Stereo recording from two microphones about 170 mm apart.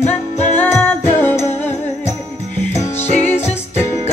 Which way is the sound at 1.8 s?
40° left (ahead or behind).